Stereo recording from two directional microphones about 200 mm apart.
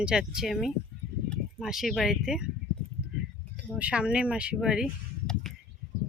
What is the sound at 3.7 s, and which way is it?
Speech, 5° right (ahead or behind).